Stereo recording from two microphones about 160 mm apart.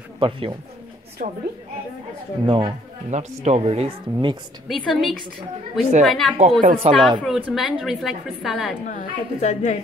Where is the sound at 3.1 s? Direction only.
45° right (ahead or behind).